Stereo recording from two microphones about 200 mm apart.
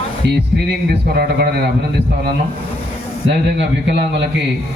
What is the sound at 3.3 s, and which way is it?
A man's voice, 60° right (ahead or behind).